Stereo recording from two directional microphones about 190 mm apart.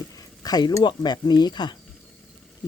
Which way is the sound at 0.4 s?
20° left (ahead or behind).